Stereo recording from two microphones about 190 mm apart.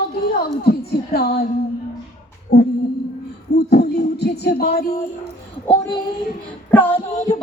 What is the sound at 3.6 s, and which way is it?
Music, 60° left (ahead or behind).